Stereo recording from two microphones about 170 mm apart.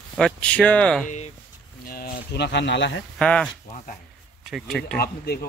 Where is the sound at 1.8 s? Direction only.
60° left (ahead or behind); by 3.0 s 90° left.